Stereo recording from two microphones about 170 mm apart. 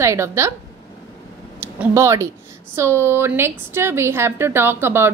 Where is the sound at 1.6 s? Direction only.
15° right (ahead or behind).